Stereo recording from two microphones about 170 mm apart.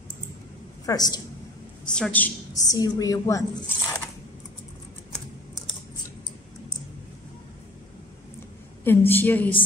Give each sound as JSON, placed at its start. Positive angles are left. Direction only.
{"t": 0.8, "sound": "speech", "side_deg": 25}
{"t": 2.0, "sound": "a woman's voice", "side_deg": 10}
{"t": 2.7, "sound": "speech", "side_deg": 20}
{"t": 8.8, "sound": "a woman's voice", "side_deg": 10}